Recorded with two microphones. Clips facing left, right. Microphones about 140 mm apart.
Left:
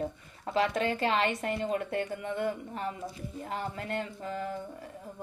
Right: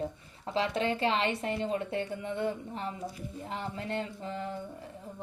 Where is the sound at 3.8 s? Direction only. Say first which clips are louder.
Even; 25° right (ahead or behind).